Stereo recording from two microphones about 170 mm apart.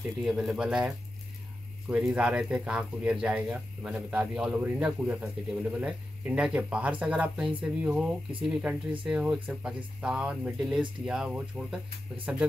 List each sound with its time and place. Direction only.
0.2 s speech: centre (ahead or behind)